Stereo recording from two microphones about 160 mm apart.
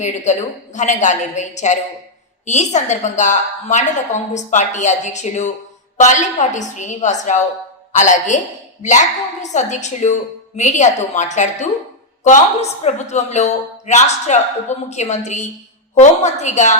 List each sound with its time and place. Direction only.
0.0 s a woman's voice: 50° left (ahead or behind)